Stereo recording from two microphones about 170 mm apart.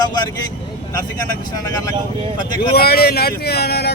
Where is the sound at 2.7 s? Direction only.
65° left (ahead or behind).